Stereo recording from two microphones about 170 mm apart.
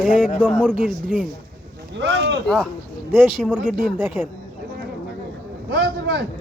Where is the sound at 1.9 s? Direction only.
90° right.